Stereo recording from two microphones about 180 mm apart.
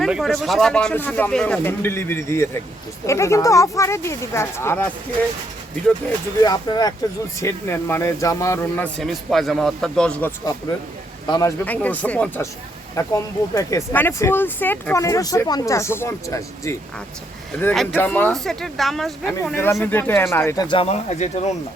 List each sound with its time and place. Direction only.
0.0 s speech: centre (ahead or behind)
6.4 s speech: 20° left (ahead or behind)
11.6 s speech: 10° left (ahead or behind)
17.9 s speech: 10° left (ahead or behind)
19.8 s speech: 10° left (ahead or behind)
20.7 s speech: 35° left (ahead or behind)